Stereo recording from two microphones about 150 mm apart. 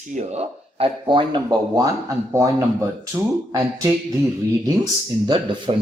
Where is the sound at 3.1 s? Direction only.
20° right (ahead or behind).